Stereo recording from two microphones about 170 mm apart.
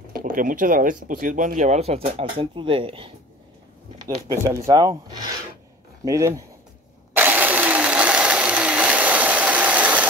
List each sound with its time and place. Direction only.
0.1 s speech: 55° right (ahead or behind); by 3.1 s 30° right (ahead or behind)
4.0 s speech: 20° right (ahead or behind)
7.2 s a sound: 10° right (ahead or behind)